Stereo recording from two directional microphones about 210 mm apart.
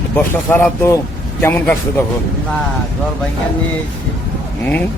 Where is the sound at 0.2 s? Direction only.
10° left (ahead or behind).